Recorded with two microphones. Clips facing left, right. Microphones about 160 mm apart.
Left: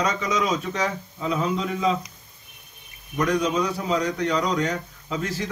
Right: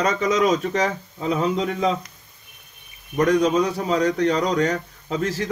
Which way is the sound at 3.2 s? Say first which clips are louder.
Right 5 dB; 45° right (ahead or behind).